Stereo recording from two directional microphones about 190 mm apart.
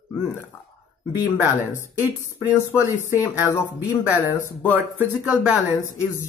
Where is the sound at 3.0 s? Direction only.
10° right (ahead or behind).